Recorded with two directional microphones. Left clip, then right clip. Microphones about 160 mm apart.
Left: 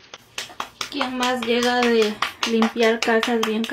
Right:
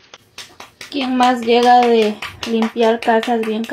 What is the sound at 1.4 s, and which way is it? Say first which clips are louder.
Speech: right 9 dB; centre (ahead or behind).